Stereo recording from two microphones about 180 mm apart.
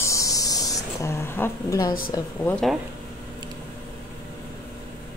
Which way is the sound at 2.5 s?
Centre (ahead or behind).